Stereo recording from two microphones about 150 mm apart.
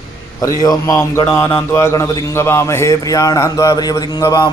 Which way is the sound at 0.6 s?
25° left (ahead or behind).